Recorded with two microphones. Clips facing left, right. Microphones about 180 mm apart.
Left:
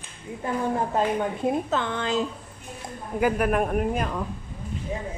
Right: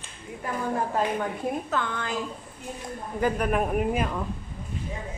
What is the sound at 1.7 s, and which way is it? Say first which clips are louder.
Speech: left 4 dB; 25° left (ahead or behind).